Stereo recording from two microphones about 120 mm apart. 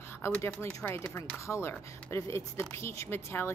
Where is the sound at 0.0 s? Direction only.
20° left (ahead or behind).